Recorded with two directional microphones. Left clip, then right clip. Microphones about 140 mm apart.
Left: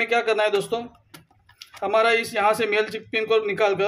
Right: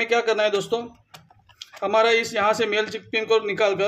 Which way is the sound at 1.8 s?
10° right (ahead or behind).